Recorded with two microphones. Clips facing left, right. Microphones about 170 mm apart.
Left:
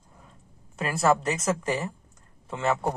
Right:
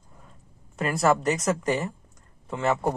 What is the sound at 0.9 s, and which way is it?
Speech, centre (ahead or behind).